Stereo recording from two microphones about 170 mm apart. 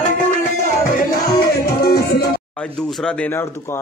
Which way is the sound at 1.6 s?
65° left (ahead or behind).